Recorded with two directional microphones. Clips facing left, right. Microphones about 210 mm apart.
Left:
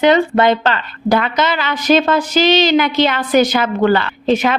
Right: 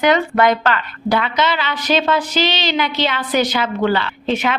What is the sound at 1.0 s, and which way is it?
A woman's voice, 45° left (ahead or behind).